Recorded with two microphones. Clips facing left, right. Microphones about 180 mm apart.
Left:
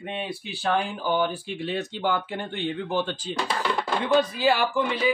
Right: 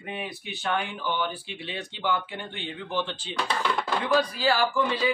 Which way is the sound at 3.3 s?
5° left (ahead or behind).